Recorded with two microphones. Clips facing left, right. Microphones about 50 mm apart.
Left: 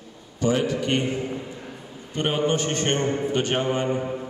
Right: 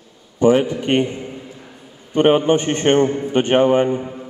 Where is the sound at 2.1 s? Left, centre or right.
Right.